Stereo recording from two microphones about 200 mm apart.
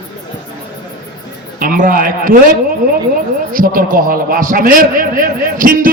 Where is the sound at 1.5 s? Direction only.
40° right (ahead or behind).